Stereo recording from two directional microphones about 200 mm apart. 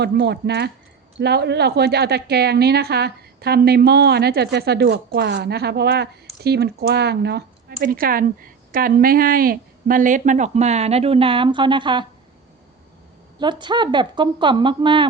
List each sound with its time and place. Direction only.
0.0 s a woman's voice: 55° right (ahead or behind); by 12.0 s 25° right (ahead or behind)
13.4 s a woman's voice: 25° right (ahead or behind)